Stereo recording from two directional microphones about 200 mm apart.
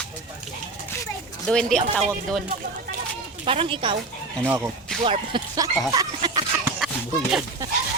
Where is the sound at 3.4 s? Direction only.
25° right (ahead or behind).